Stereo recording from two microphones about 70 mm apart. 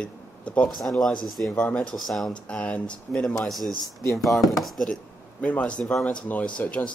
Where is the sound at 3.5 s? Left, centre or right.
Centre.